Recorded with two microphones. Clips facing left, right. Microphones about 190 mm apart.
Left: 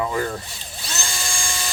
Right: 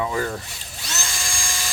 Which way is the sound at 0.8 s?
30° left (ahead or behind).